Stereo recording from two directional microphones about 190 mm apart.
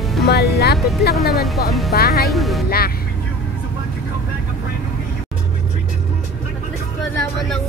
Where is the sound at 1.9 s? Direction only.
55° left (ahead or behind).